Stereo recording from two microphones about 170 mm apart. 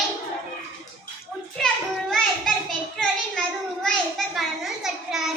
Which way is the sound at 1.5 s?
5° left (ahead or behind).